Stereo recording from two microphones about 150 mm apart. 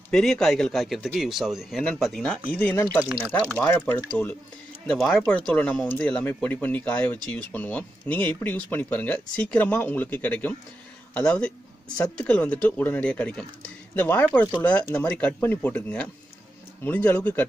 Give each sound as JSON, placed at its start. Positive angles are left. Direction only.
{"t": 0.1, "sound": "a man's voice", "side_deg": 5}
{"t": 5.1, "sound": "speech", "side_deg": 15}